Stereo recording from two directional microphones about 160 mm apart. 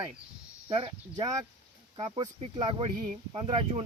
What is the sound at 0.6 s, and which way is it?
Speech, 30° right (ahead or behind).